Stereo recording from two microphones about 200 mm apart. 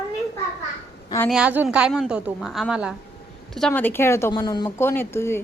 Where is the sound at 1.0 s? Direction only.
10° left (ahead or behind).